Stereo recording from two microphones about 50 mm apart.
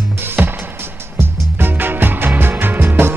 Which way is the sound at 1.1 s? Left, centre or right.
Right.